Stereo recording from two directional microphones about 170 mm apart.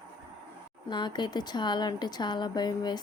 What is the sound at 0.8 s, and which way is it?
Speech, 25° left (ahead or behind).